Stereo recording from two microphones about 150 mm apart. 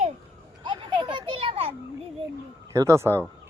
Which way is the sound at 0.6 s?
30° right (ahead or behind).